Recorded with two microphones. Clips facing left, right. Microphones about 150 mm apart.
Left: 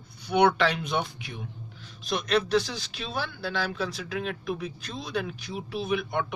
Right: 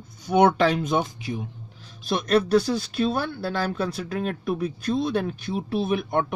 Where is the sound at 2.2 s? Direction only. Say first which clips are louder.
Right 5 dB; 50° right (ahead or behind).